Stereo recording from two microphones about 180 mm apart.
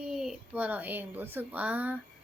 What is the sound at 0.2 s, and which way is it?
A woman's voice, 5° right (ahead or behind).